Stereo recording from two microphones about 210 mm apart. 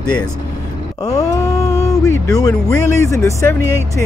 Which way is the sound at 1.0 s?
15° left (ahead or behind).